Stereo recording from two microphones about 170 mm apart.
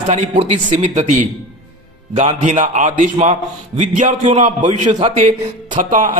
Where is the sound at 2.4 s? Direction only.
45° right (ahead or behind).